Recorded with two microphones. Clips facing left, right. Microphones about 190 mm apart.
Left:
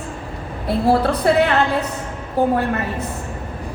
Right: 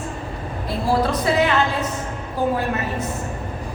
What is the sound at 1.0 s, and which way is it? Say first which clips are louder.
A woman's voice: left 3 dB; 60° left (ahead or behind).